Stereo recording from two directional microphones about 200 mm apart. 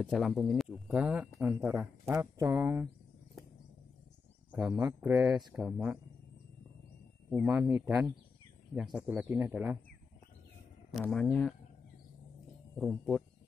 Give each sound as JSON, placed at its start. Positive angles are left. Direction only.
{"t": 0.0, "sound": "speech", "side_deg": 0}
{"t": 4.5, "sound": "a sound", "side_deg": -20}
{"t": 4.7, "sound": "speech", "side_deg": -5}
{"t": 7.4, "sound": "speech", "side_deg": -15}
{"t": 8.7, "sound": "speech", "side_deg": 0}
{"t": 10.9, "sound": "speech", "side_deg": 0}
{"t": 12.7, "sound": "speech", "side_deg": 0}